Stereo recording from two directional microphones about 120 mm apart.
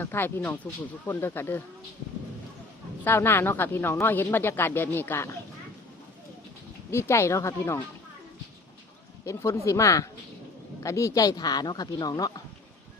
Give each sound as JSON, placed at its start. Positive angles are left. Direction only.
{"t": 0.0, "sound": "speech", "side_deg": 20}
{"t": 3.0, "sound": "speech", "side_deg": 20}
{"t": 6.9, "sound": "speech", "side_deg": 25}
{"t": 9.2, "sound": "speech", "side_deg": 25}